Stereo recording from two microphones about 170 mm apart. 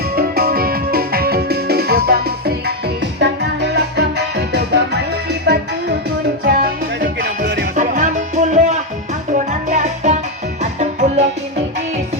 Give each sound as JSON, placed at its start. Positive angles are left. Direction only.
{"t": 0.2, "sound": "music", "side_deg": -65}
{"t": 3.2, "sound": "music", "side_deg": -90}
{"t": 6.4, "sound": "music", "side_deg": -65}
{"t": 7.8, "sound": "music", "side_deg": -50}